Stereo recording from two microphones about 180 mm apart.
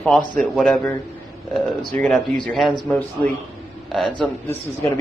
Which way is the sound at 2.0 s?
5° left (ahead or behind).